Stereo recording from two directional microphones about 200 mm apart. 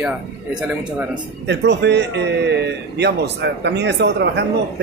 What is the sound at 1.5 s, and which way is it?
Speech, 60° right (ahead or behind).